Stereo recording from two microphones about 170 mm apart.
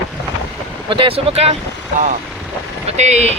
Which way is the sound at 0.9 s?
30° right (ahead or behind).